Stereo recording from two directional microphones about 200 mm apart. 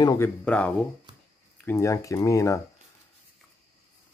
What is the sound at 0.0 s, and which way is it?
Speech, 20° left (ahead or behind).